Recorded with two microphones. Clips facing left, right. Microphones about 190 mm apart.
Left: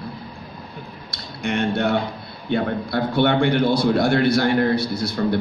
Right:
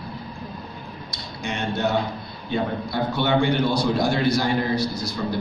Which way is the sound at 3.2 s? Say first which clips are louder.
Left 3 dB; 60° left (ahead or behind).